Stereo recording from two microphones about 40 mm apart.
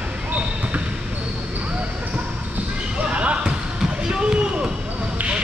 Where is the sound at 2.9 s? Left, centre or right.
Right.